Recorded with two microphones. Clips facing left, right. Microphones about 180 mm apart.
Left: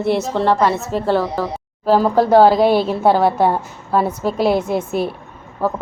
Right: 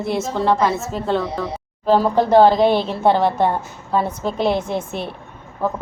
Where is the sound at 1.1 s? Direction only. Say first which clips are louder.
Left 1 dB; 75° left (ahead or behind).